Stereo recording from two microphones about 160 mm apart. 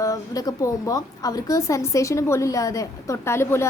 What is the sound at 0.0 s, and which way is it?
A woman's voice, 20° left (ahead or behind).